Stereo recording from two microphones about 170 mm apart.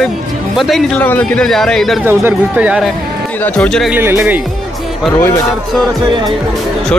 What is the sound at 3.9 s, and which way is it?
Speech, 10° right (ahead or behind).